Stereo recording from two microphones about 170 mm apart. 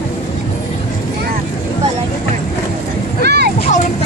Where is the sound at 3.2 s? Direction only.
75° right (ahead or behind).